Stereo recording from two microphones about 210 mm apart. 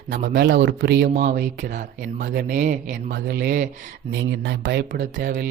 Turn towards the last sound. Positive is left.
turn(degrees=-45)  # may be behind; listen again after turning